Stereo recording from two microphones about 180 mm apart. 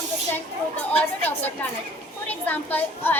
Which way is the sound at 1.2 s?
10° left (ahead or behind).